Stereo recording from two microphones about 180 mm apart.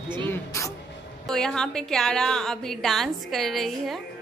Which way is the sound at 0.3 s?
15° left (ahead or behind).